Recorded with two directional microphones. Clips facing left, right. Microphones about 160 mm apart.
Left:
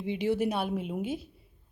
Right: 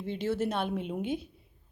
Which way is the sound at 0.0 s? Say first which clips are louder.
Left 3 dB; 15° left (ahead or behind).